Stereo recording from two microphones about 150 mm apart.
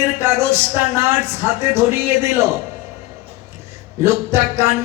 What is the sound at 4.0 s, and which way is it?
Speech, 20° right (ahead or behind).